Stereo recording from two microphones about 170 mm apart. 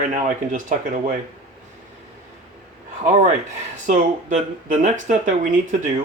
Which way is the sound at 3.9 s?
50° right (ahead or behind).